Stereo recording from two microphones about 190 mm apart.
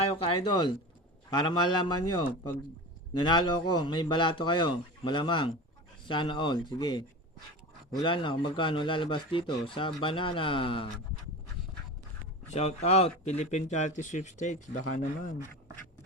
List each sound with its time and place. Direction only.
0.1 s speech: 25° left (ahead or behind)
8.0 s speech: 25° left (ahead or behind)
12.5 s speech: 35° left (ahead or behind)